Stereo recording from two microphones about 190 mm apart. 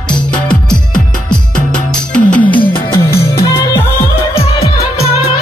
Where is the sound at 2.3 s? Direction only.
10° left (ahead or behind).